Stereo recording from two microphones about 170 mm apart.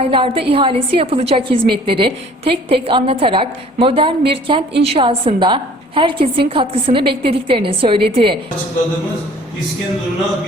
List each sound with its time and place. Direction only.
0.0 s a woman's voice: 30° right (ahead or behind)